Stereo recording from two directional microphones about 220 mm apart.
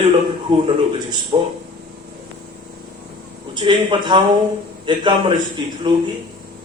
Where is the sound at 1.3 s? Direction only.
25° right (ahead or behind).